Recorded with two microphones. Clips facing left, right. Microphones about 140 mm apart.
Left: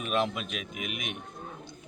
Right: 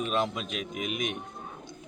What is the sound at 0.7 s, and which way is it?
Speech, 45° right (ahead or behind).